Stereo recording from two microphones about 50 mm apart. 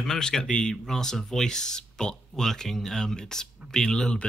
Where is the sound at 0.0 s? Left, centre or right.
Centre.